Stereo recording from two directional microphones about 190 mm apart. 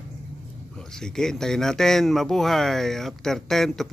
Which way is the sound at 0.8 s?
5° left (ahead or behind).